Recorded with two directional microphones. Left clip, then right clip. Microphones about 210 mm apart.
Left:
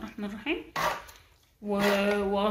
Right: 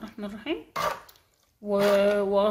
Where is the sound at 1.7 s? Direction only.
45° right (ahead or behind).